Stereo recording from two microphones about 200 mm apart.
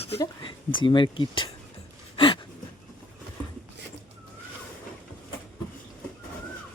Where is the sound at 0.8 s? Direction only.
25° left (ahead or behind).